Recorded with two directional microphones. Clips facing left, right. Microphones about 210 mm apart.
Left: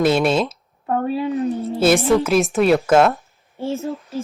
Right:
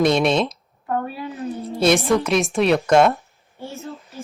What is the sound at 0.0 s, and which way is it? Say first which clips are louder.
Speech: left 1 dB; 5° left (ahead or behind).